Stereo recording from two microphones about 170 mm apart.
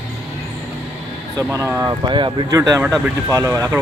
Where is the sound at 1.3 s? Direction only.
15° right (ahead or behind).